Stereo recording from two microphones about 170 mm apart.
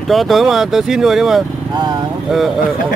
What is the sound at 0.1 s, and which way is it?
Speech, centre (ahead or behind).